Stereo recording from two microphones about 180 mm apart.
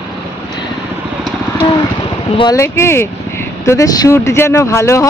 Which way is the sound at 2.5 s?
15° left (ahead or behind).